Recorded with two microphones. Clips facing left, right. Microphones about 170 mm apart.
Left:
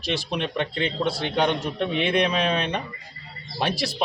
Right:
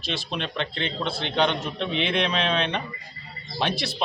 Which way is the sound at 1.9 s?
50° left (ahead or behind).